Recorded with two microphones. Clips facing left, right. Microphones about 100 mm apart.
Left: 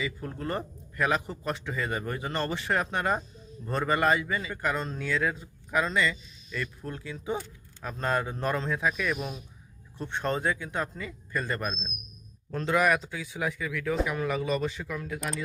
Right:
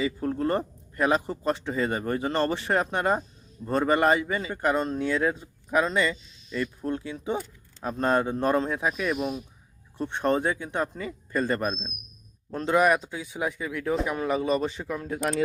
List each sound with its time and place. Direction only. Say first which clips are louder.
0.0 s a man's voice: right 7 dB; 35° right (ahead or behind)
10.0 s a man's voice: right 5 dB; 20° right (ahead or behind); by 15.4 s 35° right (ahead or behind)